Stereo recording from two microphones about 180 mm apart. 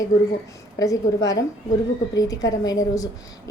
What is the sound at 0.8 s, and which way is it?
A woman's voice, 20° left (ahead or behind).